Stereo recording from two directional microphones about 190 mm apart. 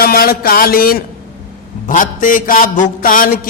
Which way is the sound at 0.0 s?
50° left (ahead or behind).